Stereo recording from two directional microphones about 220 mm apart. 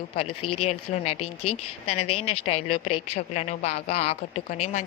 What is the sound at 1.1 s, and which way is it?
A woman's voice, 90° left.